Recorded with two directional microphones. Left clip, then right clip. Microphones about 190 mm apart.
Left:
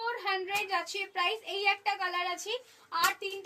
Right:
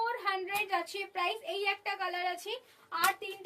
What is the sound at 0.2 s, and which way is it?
A child's voice, 20° right (ahead or behind).